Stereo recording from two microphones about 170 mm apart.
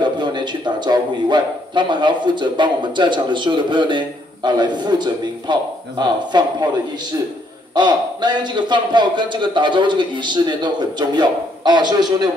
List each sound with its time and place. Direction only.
0.0 s a man's voice: 25° right (ahead or behind)
7.7 s a man's voice: 25° right (ahead or behind)